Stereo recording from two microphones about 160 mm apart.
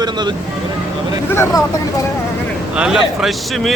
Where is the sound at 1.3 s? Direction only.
15° left (ahead or behind).